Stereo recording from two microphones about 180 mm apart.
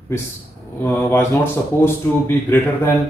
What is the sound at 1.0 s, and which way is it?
Speech, 15° left (ahead or behind).